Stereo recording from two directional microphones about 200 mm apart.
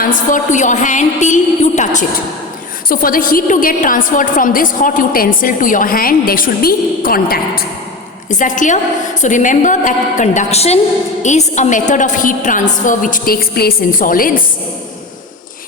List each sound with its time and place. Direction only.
0.0 s a woman's voice: 40° left (ahead or behind)